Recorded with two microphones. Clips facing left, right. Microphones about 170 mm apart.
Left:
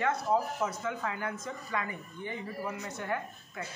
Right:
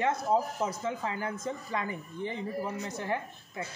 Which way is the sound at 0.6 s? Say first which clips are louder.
Right 1 dB; 25° right (ahead or behind).